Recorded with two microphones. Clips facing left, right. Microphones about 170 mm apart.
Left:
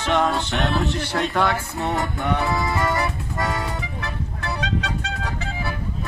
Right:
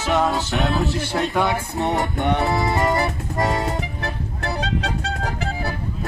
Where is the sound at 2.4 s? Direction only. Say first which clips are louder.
Right 2 dB; 35° right (ahead or behind).